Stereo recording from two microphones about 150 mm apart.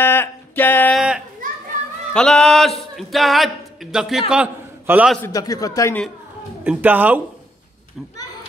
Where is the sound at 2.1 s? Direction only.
5° left (ahead or behind).